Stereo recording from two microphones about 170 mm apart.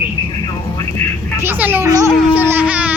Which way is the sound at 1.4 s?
10° right (ahead or behind).